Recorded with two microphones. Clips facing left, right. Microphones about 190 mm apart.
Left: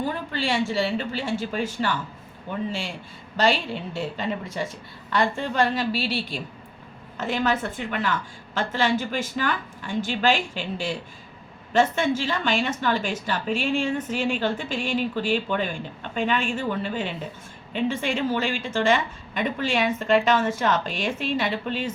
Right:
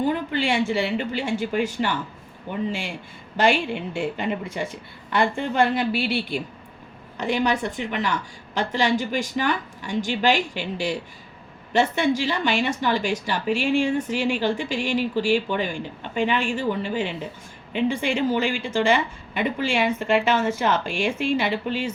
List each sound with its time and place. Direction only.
0.1 s a woman's voice: 15° right (ahead or behind)
7.3 s a woman's voice: 15° right (ahead or behind)